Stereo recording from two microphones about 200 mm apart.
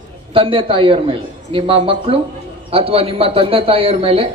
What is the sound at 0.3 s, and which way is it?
A man's voice, 25° right (ahead or behind).